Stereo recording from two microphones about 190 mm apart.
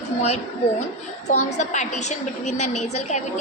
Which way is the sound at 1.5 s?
40° left (ahead or behind).